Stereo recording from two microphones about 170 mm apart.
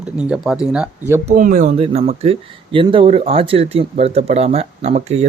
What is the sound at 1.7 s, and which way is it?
Speech, 35° right (ahead or behind).